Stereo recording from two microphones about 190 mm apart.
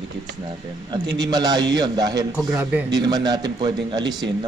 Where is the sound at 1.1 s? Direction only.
20° right (ahead or behind).